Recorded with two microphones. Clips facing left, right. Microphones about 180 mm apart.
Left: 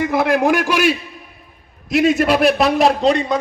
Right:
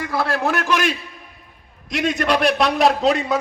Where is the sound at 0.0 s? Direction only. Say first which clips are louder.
Left 6 dB; 20° left (ahead or behind).